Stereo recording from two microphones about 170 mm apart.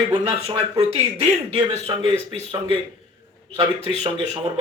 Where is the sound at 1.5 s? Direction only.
35° right (ahead or behind).